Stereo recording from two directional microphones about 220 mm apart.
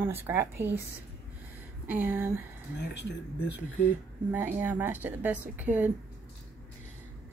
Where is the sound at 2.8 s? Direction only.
50° left (ahead or behind).